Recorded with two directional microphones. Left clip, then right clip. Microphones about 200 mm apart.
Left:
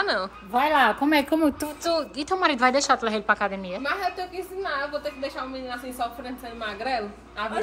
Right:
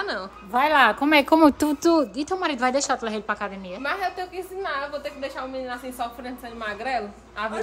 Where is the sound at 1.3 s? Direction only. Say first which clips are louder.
Right 7 dB; 45° right (ahead or behind).